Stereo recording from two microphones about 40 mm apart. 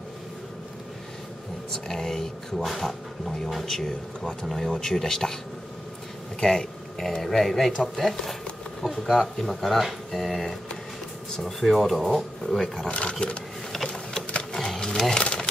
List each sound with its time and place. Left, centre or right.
1.7 s speech: centre
6.4 s speech: centre
12.8 s speech: left
14.8 s speech: centre
15.1 s a sound: left